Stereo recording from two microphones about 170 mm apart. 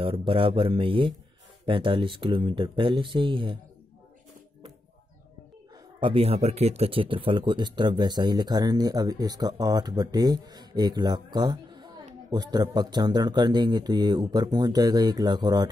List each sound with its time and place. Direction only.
0.0 s speech: 30° right (ahead or behind)
5.9 s speech: 35° right (ahead or behind)